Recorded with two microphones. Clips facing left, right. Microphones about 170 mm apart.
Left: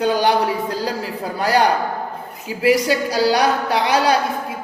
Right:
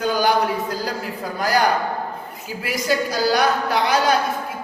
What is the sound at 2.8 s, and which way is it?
A woman's voice, 30° left (ahead or behind).